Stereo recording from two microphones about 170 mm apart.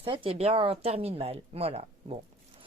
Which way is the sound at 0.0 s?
30° right (ahead or behind).